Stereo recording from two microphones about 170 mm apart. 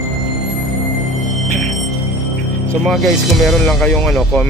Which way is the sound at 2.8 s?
Centre (ahead or behind).